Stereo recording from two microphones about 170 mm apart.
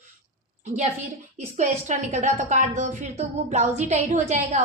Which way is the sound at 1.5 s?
45° right (ahead or behind).